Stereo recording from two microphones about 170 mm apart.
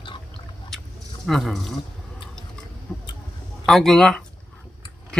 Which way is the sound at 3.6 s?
Centre (ahead or behind).